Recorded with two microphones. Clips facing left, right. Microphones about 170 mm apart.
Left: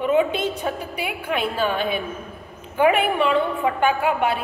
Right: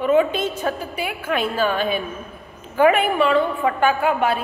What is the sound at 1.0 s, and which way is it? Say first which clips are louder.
A man's voice: right 2 dB; 15° left (ahead or behind).